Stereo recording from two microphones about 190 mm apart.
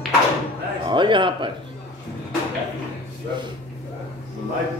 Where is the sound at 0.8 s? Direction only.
25° right (ahead or behind).